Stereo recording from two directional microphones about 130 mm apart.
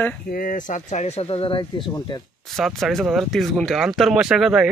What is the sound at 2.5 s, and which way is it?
Speech, centre (ahead or behind).